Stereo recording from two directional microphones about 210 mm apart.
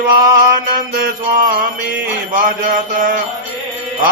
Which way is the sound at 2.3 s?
40° right (ahead or behind).